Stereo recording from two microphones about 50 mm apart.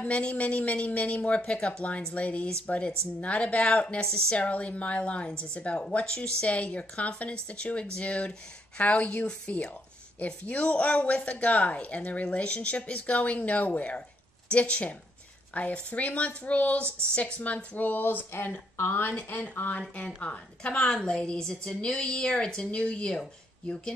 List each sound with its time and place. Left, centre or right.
0.0 s speech: left
20.2 s speech: left